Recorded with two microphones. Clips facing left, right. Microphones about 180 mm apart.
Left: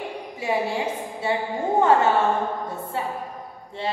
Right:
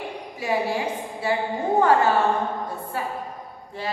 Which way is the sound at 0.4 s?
25° left (ahead or behind).